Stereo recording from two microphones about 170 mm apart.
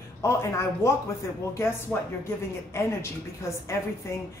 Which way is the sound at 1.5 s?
15° left (ahead or behind).